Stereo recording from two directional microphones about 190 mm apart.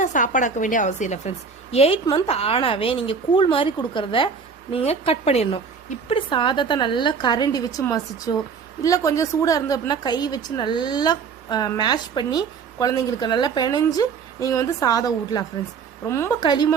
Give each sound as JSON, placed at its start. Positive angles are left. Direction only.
{"t": 0.0, "sound": "a woman's voice", "side_deg": 40}
{"t": 16.4, "sound": "a woman's voice", "side_deg": 25}